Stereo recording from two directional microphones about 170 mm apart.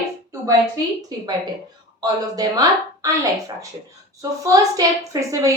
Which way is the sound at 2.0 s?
20° right (ahead or behind).